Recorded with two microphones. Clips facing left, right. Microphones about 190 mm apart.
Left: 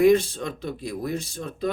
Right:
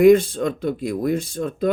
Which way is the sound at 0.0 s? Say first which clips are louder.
Right 5 dB; 50° right (ahead or behind).